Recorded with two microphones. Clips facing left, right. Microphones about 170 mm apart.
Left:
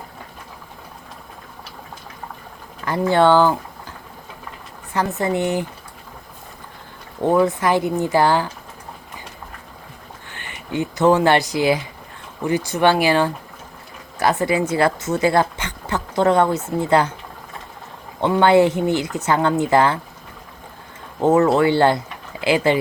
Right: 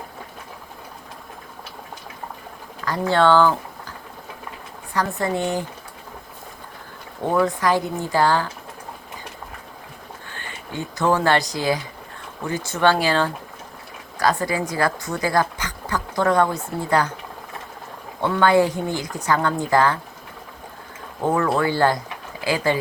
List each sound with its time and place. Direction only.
2.8 s speech: 20° left (ahead or behind)
4.9 s a woman's voice: 20° left (ahead or behind)
7.3 s speech: 20° left (ahead or behind)
10.2 s a woman's voice: 20° left (ahead or behind)
18.2 s a woman's voice: 20° left (ahead or behind)
21.2 s a woman's voice: 25° left (ahead or behind)